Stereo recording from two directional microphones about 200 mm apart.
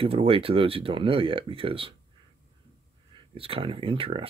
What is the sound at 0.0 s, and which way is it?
Speech, 30° right (ahead or behind).